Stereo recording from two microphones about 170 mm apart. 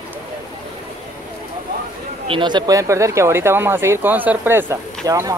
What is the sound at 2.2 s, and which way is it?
Speech, 30° right (ahead or behind).